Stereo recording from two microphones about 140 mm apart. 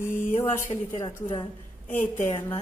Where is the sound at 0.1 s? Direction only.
70° left (ahead or behind).